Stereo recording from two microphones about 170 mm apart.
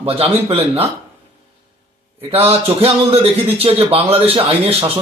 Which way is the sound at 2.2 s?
35° right (ahead or behind).